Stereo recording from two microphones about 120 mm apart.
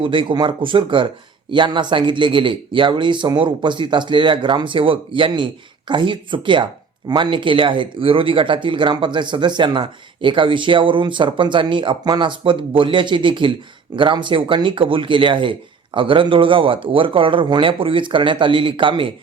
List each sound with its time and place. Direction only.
0.0 s speech: 45° right (ahead or behind)